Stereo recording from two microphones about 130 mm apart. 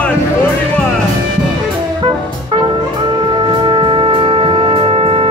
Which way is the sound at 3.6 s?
35° right (ahead or behind).